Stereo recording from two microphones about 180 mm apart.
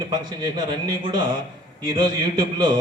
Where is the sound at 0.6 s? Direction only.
25° right (ahead or behind).